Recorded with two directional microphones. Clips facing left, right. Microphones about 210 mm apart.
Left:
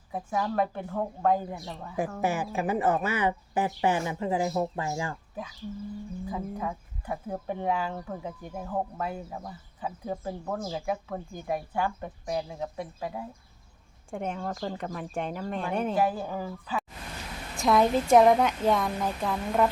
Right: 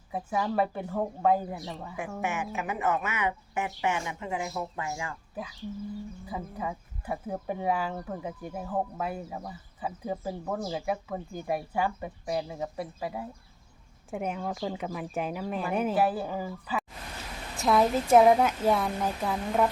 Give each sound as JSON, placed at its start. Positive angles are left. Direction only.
{"t": 0.1, "sound": "speech", "side_deg": -5}
{"t": 2.2, "sound": "speech", "side_deg": 35}
{"t": 6.2, "sound": "speech", "side_deg": -5}